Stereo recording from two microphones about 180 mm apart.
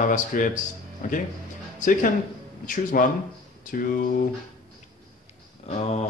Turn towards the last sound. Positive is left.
turn(degrees=40)  # may be behind; listen again after turning